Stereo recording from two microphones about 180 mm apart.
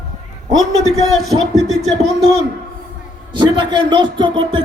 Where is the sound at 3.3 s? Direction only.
25° right (ahead or behind).